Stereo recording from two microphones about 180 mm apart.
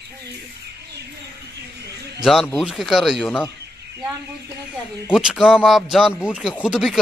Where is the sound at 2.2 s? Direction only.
Centre (ahead or behind).